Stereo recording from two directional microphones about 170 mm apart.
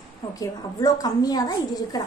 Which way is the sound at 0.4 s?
20° left (ahead or behind).